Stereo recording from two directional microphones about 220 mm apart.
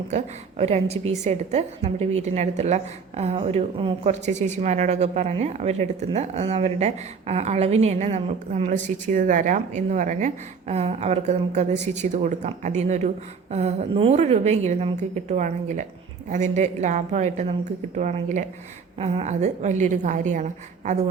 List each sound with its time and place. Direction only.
0.6 s a woman's voice: 30° right (ahead or behind)